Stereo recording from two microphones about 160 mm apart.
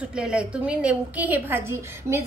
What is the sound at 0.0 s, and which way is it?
A woman's voice, 5° right (ahead or behind).